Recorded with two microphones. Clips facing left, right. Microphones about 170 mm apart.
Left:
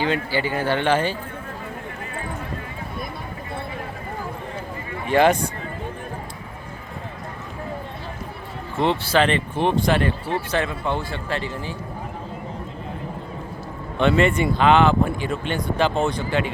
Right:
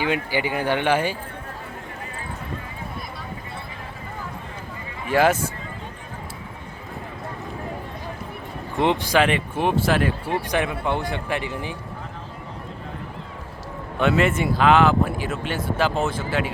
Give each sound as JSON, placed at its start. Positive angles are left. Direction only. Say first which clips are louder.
{"t": 0.0, "sound": "speech", "louder": "left 1 dB", "side_deg": -15}
{"t": 5.0, "sound": "speech", "louder": "left 2 dB", "side_deg": -5}
{"t": 8.7, "sound": "speech", "louder": "even", "side_deg": -15}
{"t": 14.0, "sound": "speech", "louder": "left 2 dB", "side_deg": -5}